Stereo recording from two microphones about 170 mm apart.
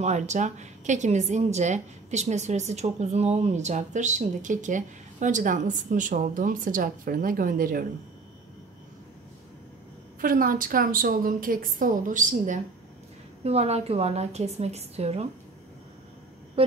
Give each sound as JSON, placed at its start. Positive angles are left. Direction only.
{"t": 0.0, "sound": "a woman's voice", "side_deg": -45}
{"t": 10.2, "sound": "a woman's voice", "side_deg": -55}
{"t": 16.6, "sound": "speech", "side_deg": -35}